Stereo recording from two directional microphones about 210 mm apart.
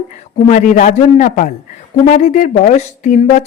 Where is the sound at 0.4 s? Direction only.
35° left (ahead or behind).